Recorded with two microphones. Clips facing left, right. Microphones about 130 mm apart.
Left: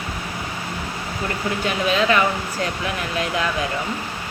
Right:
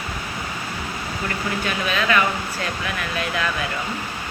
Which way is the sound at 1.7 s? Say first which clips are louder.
Left 4 dB; 25° left (ahead or behind).